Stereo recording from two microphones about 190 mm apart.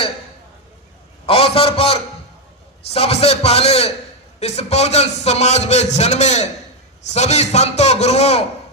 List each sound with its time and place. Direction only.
1.3 s a man's voice: 30° left (ahead or behind)